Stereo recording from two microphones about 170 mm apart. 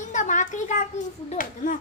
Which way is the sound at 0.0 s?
45° left (ahead or behind).